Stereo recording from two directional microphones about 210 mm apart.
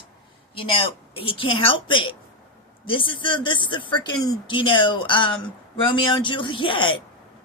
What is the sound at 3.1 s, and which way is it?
Speech, 25° left (ahead or behind).